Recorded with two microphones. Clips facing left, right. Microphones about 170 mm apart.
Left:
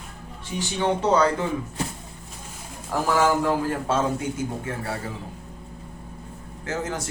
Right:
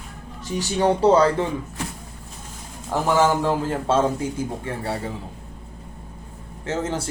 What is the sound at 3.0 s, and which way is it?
A man's voice, 25° right (ahead or behind).